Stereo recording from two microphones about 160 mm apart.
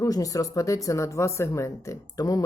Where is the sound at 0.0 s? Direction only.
20° left (ahead or behind).